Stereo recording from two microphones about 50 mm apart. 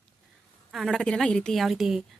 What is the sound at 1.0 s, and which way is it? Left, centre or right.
Speech, centre.